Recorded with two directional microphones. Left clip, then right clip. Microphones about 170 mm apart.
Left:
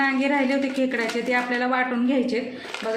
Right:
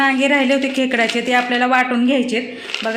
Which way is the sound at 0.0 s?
45° right (ahead or behind).